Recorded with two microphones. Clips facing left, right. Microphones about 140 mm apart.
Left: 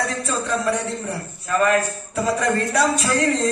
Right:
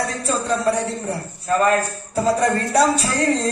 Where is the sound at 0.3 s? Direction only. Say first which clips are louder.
Right 4 dB; 30° right (ahead or behind).